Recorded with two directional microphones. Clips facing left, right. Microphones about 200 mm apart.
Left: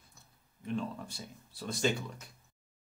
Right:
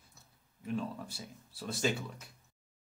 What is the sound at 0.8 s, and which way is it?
Speech, 5° right (ahead or behind).